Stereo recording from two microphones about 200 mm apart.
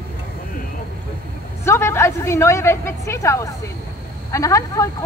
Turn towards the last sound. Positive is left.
turn(degrees=15)  # may be behind; listen again after turning